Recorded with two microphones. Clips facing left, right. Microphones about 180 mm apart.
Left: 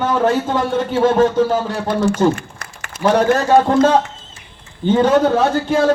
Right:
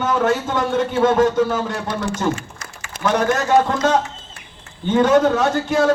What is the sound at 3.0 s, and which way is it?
Speech, 30° left (ahead or behind).